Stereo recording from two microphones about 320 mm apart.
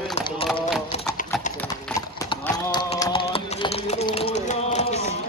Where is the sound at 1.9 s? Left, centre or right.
Centre.